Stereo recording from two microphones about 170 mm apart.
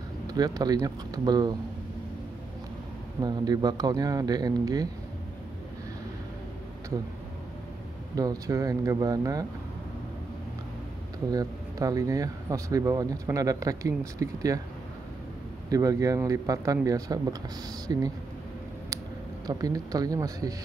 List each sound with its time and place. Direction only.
0.3 s speech: 20° right (ahead or behind)
3.2 s speech: 25° right (ahead or behind)
8.2 s speech: 20° right (ahead or behind)
11.3 s speech: 20° right (ahead or behind)
15.7 s speech: 20° right (ahead or behind)
19.4 s speech: 20° right (ahead or behind)